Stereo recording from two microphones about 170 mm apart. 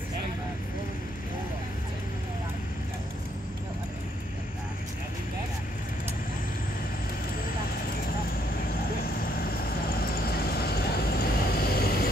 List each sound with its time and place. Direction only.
9.9 s vehicle: 65° left (ahead or behind)